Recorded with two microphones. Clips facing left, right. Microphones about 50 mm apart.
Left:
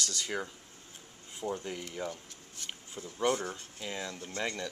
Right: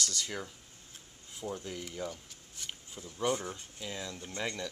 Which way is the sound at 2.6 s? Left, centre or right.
Centre.